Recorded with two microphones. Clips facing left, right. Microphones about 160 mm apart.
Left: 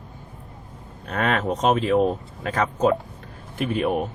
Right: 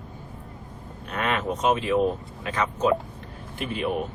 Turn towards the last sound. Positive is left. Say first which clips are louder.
# left 5 dB
turn(degrees=45)  # may be behind; listen again after turning